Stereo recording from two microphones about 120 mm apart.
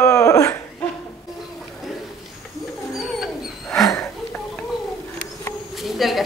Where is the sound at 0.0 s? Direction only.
30° left (ahead or behind).